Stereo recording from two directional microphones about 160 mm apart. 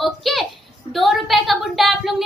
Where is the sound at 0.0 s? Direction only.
Centre (ahead or behind).